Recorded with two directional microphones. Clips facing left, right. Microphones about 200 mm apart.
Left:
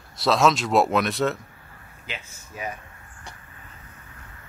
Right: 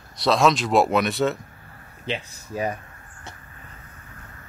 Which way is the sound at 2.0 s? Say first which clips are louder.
Right 9 dB; 35° right (ahead or behind).